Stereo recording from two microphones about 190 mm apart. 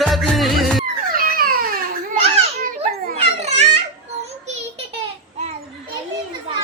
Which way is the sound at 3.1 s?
35° right (ahead or behind).